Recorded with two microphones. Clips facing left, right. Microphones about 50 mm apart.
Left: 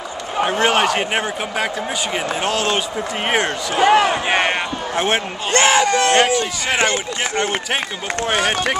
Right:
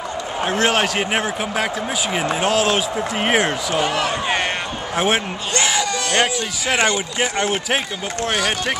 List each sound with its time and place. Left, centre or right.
0.4 s speech: centre
3.8 s speech: left
4.1 s speech: left
4.9 s speech: centre
5.5 s a sound: left
7.2 s speech: centre